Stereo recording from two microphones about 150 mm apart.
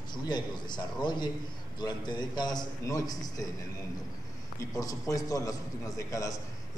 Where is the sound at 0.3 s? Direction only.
30° left (ahead or behind).